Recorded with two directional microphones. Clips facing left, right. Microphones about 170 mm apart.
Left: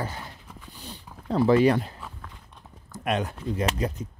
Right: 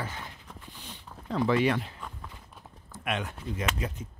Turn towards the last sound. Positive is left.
turn(degrees=35)  # may be behind; listen again after turning